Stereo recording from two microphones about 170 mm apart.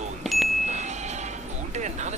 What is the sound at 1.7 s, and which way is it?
Speech, 45° right (ahead or behind).